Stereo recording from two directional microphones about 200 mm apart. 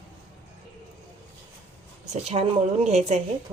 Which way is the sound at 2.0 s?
35° right (ahead or behind).